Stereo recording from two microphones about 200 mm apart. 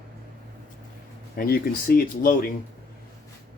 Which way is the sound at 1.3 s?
50° left (ahead or behind).